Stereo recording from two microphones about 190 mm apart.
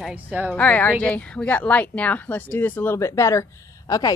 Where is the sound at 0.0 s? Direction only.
5° right (ahead or behind).